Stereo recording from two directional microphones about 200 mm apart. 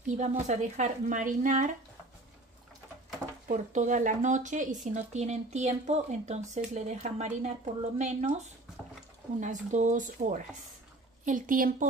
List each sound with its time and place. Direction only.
0.2 s a woman's voice: 35° right (ahead or behind)
3.4 s a woman's voice: 40° right (ahead or behind)